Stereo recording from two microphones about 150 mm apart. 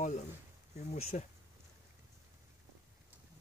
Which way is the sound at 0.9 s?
45° left (ahead or behind).